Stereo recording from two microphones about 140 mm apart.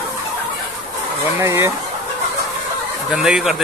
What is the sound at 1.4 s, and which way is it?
Speech, 20° right (ahead or behind).